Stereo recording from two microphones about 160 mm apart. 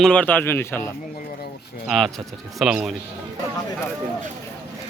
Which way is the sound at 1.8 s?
Centre (ahead or behind).